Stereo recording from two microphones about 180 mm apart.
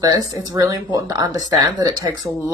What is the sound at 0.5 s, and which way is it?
Speech, 20° right (ahead or behind).